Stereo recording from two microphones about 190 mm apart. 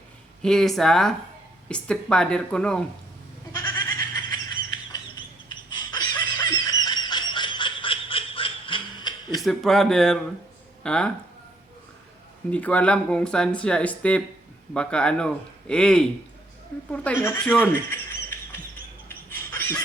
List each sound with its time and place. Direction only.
0.4 s speech: centre (ahead or behind)
3.5 s goat: 15° left (ahead or behind)
4.3 s a sound: 20° left (ahead or behind)
9.4 s speech: centre (ahead or behind)
12.5 s speech: 5° left (ahead or behind)
19.0 s a sound: 10° left (ahead or behind)